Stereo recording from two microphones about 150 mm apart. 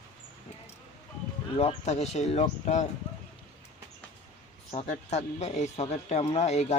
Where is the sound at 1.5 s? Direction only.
45° left (ahead or behind).